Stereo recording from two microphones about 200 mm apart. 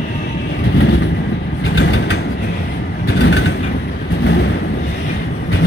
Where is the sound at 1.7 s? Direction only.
70° left (ahead or behind).